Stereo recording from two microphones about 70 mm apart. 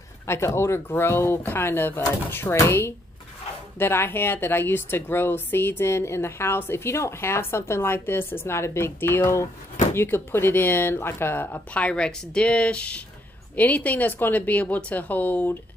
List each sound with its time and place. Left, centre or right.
0.6 s speech: left
3.7 s speech: left
11.7 s a woman's voice: centre